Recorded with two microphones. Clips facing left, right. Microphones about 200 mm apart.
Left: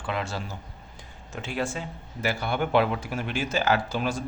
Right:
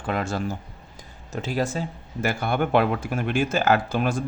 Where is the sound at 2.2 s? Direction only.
50° right (ahead or behind).